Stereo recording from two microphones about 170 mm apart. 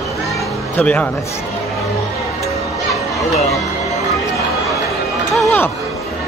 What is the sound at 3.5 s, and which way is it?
Music, centre (ahead or behind).